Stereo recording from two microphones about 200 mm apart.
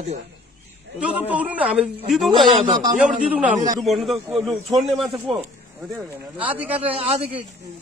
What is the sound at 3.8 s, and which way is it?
Speech, centre (ahead or behind).